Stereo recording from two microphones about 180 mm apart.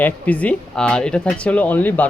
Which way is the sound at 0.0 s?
10° left (ahead or behind).